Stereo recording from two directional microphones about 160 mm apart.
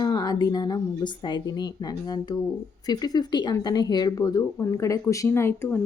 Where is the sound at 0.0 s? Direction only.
25° left (ahead or behind).